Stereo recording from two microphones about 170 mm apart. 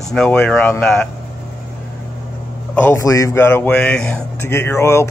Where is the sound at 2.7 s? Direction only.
15° left (ahead or behind).